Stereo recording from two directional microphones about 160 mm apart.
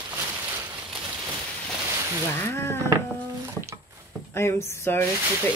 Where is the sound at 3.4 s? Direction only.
20° right (ahead or behind).